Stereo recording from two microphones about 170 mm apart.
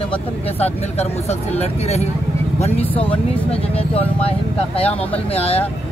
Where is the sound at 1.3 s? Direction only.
40° left (ahead or behind).